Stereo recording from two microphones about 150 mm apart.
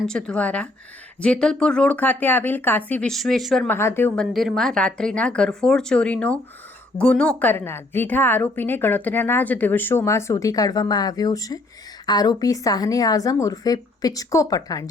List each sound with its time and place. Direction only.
0.0 s a woman's voice: 5° left (ahead or behind)
3.7 s a woman's voice: 15° left (ahead or behind)